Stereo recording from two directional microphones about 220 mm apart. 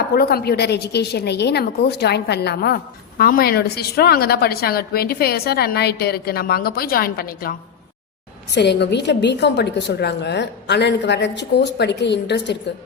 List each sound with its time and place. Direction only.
0.1 s a woman's voice: 45° left (ahead or behind)